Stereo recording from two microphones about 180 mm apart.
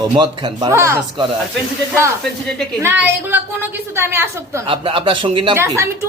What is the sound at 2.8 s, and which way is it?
A woman's voice, 10° right (ahead or behind).